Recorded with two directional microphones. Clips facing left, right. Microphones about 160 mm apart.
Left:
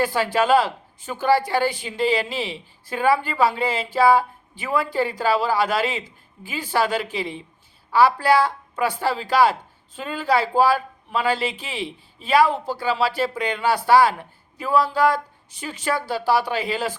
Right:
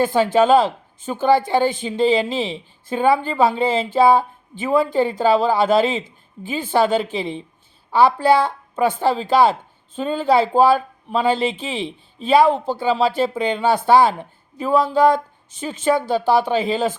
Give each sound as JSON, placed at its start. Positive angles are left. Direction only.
{"t": 0.0, "sound": "a woman's voice", "side_deg": -20}